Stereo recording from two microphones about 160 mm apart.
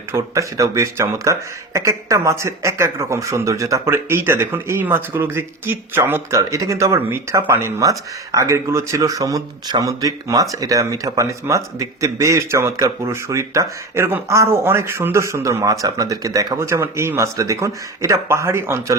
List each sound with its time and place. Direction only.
0.1 s a man's voice: 20° right (ahead or behind)